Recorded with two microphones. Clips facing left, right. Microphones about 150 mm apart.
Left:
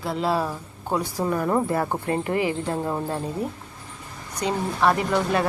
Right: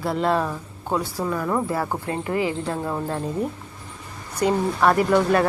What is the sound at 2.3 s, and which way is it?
Speech, 15° left (ahead or behind).